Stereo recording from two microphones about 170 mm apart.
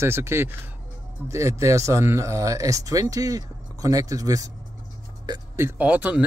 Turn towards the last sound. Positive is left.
turn(degrees=-10)  # may be behind; listen again after turning